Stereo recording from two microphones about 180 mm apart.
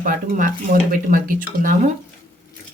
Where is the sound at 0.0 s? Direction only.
50° right (ahead or behind).